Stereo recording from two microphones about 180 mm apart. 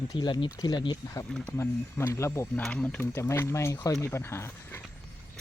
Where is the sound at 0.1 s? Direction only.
25° left (ahead or behind).